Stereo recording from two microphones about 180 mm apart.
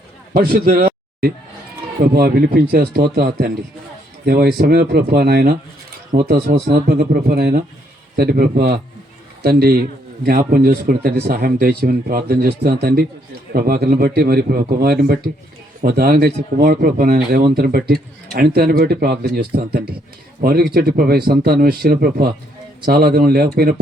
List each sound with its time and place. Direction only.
0.3 s speech: 55° right (ahead or behind)
2.0 s speech: 55° right (ahead or behind)